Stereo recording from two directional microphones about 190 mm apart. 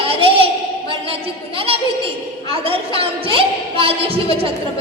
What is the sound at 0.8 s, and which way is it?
A woman's voice, 30° right (ahead or behind).